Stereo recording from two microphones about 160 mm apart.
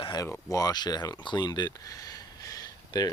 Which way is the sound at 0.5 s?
25° left (ahead or behind).